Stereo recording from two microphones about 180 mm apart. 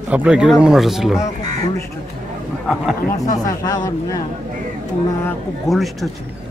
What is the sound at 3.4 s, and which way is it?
Speech, 20° left (ahead or behind).